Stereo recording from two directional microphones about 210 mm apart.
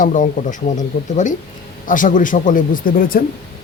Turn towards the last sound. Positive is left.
turn(degrees=45)  # may be behind; listen again after turning